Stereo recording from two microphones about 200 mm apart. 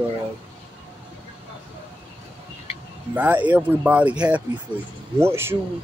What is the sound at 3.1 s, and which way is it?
Speech, 10° right (ahead or behind).